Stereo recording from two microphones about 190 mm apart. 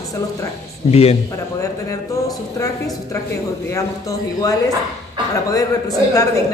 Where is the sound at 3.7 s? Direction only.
20° left (ahead or behind).